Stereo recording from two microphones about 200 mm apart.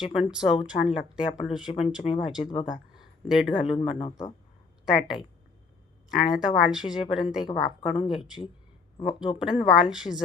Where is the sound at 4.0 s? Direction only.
15° left (ahead or behind).